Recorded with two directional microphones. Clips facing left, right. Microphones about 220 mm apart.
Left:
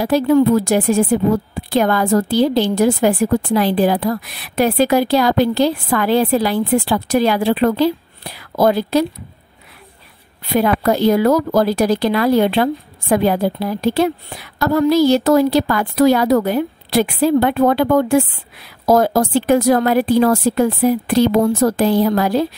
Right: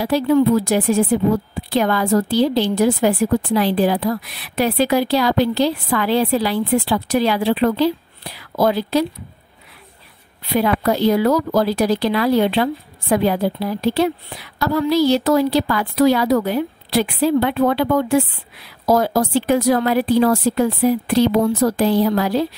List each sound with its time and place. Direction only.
0.0 s a woman's voice: 45° left (ahead or behind)
10.4 s a woman's voice: 50° left (ahead or behind)